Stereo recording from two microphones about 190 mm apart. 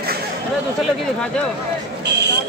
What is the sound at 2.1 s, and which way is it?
Buzzer, 60° right (ahead or behind).